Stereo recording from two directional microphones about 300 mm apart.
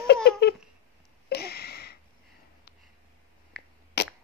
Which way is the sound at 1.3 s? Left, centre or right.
Left.